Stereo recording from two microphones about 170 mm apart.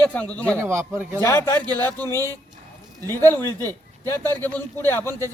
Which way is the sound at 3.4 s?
20° right (ahead or behind).